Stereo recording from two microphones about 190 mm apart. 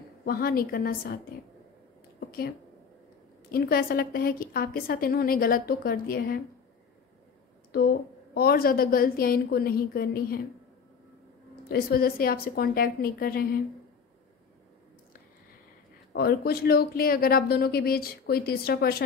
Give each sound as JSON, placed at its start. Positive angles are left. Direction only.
{"t": 0.2, "sound": "a woman's voice", "side_deg": 50}
{"t": 2.1, "sound": "a sound", "side_deg": 55}
{"t": 3.5, "sound": "a woman's voice", "side_deg": 55}
{"t": 7.7, "sound": "a woman's voice", "side_deg": 55}
{"t": 11.7, "sound": "a woman's voice", "side_deg": 50}
{"t": 16.1, "sound": "speech", "side_deg": 55}